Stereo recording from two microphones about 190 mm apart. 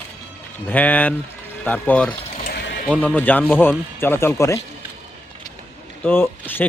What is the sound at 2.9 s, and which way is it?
A man's voice, 5° left (ahead or behind).